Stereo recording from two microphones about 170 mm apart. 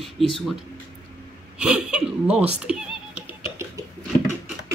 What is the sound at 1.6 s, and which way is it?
Speech, 5° right (ahead or behind).